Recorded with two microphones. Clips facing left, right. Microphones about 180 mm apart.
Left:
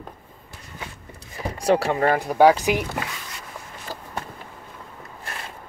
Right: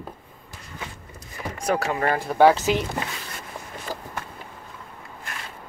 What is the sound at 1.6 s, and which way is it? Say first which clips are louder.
Speech: left 4 dB; 30° left (ahead or behind).